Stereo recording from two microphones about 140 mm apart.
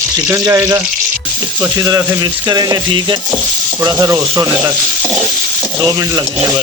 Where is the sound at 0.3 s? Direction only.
20° right (ahead or behind).